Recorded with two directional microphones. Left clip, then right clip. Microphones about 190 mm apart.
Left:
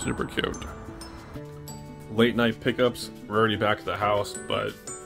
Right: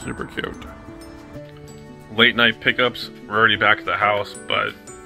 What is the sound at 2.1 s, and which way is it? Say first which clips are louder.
Speech: right 8 dB; 15° left (ahead or behind).